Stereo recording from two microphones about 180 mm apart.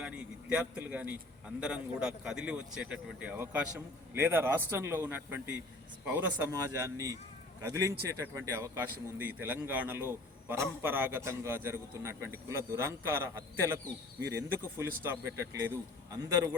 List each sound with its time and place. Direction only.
0.0 s a man's voice: 5° right (ahead or behind)